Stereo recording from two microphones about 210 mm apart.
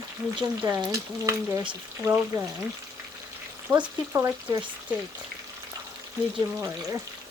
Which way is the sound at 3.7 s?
20° right (ahead or behind).